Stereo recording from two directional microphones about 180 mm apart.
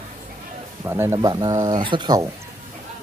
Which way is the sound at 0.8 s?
15° right (ahead or behind).